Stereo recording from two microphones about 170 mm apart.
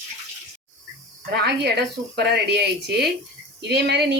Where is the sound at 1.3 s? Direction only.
75° right (ahead or behind).